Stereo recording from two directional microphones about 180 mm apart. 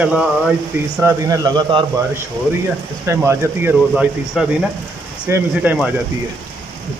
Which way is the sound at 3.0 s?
15° right (ahead or behind).